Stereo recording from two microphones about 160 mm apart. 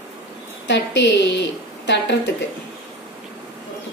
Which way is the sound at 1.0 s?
90° left.